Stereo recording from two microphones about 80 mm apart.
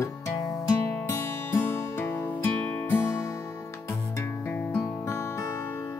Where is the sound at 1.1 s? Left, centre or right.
Left.